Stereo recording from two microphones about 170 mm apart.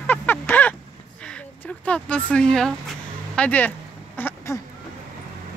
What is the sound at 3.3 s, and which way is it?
Speech, 10° left (ahead or behind).